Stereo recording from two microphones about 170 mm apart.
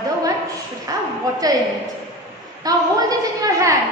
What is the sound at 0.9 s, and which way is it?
Speech, 20° right (ahead or behind).